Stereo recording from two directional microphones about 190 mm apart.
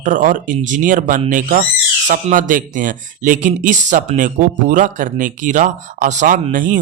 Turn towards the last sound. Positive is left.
turn(degrees=-45)  # may be behind; listen again after turning